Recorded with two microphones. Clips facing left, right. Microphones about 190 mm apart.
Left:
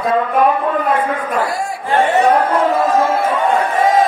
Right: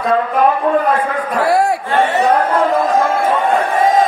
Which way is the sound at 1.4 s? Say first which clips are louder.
Right 7 dB; 65° right (ahead or behind).